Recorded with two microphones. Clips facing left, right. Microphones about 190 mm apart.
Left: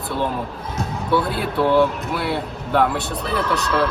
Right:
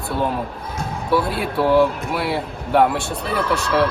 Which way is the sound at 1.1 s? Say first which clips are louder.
Right 1 dB; centre (ahead or behind).